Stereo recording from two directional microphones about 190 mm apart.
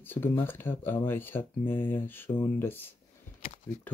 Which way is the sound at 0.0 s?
10° left (ahead or behind).